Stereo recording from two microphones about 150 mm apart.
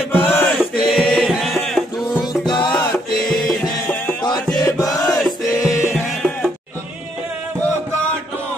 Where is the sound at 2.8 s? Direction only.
10° left (ahead or behind).